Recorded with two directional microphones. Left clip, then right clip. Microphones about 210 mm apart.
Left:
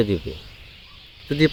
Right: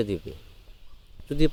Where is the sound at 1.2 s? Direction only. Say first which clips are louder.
Left 6 dB; 40° right (ahead or behind).